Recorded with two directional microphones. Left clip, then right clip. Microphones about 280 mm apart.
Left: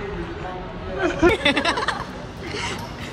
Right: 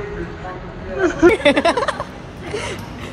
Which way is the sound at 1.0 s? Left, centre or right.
Centre.